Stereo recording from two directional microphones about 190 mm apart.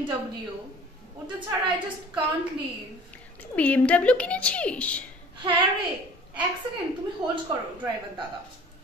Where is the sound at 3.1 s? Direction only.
5° left (ahead or behind).